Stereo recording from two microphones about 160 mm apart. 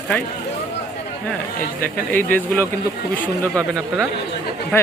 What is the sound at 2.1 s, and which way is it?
Speech, 10° left (ahead or behind).